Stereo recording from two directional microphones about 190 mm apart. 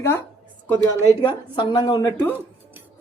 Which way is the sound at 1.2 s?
25° left (ahead or behind).